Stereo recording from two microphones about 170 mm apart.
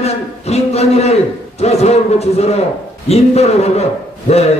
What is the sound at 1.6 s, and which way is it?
A man's voice, 40° left (ahead or behind).